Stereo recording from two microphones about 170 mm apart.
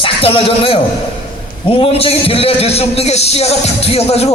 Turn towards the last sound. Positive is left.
turn(degrees=35)  # may be behind; listen again after turning